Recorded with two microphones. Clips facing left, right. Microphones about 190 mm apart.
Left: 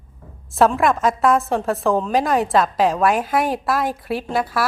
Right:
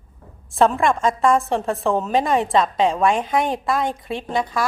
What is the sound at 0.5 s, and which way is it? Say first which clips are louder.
A woman's voice: left 1 dB; centre (ahead or behind).